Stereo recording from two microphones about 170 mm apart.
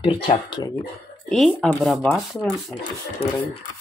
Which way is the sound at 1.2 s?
Centre (ahead or behind).